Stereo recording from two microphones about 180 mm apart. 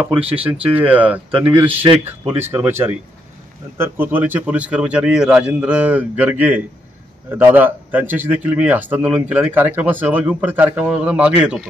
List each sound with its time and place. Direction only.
0.1 s speech: 30° right (ahead or behind)
0.4 s a man's voice: 10° right (ahead or behind)